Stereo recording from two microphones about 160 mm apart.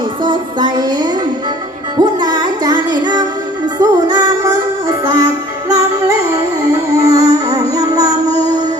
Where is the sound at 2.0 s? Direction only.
25° right (ahead or behind).